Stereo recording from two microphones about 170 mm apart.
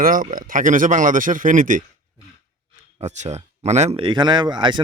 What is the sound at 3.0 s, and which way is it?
Speech, 40° right (ahead or behind).